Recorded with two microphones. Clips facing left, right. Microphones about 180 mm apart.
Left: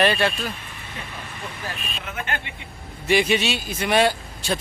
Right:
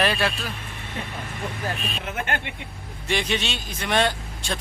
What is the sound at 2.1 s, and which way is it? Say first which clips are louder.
Speech: right 1 dB; 50° right (ahead or behind).